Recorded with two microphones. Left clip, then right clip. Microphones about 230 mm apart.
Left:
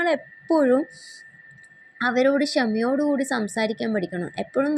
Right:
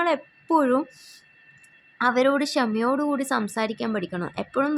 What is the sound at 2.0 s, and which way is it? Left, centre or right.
Speech, centre.